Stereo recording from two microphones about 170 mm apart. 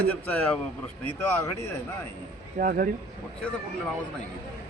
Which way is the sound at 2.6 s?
55° right (ahead or behind).